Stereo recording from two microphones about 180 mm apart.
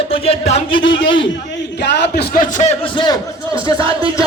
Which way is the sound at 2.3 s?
45° left (ahead or behind).